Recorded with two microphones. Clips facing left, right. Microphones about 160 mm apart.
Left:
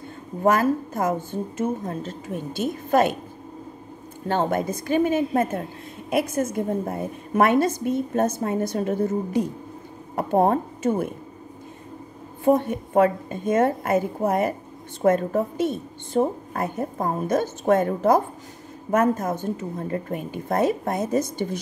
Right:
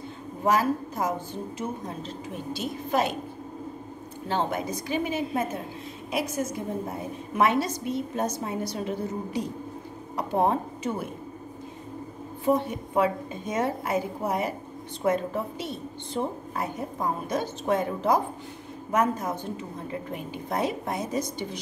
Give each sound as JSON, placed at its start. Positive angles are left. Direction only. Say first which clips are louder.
{"t": 0.4, "sound": "a woman's voice", "louder": "left 4 dB", "side_deg": 50}
{"t": 4.3, "sound": "a woman's voice", "louder": "left 5 dB", "side_deg": 50}
{"t": 12.4, "sound": "a woman's voice", "louder": "left 5 dB", "side_deg": 50}